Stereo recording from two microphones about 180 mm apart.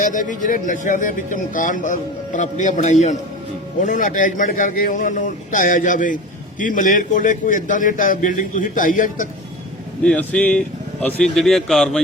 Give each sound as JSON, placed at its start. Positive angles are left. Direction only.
{"t": 0.0, "sound": "a man's voice", "side_deg": 45}
{"t": 10.0, "sound": "a man's voice", "side_deg": 5}